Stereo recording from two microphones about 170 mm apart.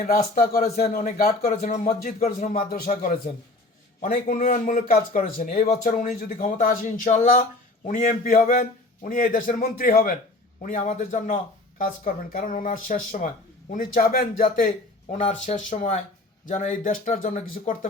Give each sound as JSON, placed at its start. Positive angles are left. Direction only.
{"t": 0.0, "sound": "a man's voice", "side_deg": 60}
{"t": 2.6, "sound": "a man's voice", "side_deg": 60}
{"t": 11.8, "sound": "a man's voice", "side_deg": 55}
{"t": 15.2, "sound": "a man's voice", "side_deg": 45}